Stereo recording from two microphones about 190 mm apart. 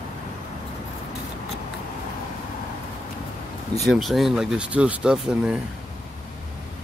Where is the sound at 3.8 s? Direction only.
Centre (ahead or behind).